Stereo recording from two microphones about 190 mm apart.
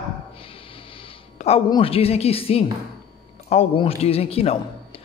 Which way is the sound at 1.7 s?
30° left (ahead or behind).